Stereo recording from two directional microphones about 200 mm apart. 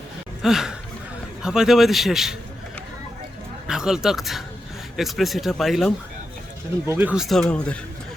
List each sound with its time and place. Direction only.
0.4 s speech: centre (ahead or behind)
3.7 s speech: 5° right (ahead or behind)